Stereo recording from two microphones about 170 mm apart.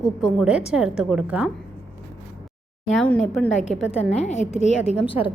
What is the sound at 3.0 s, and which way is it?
Speech, 5° left (ahead or behind).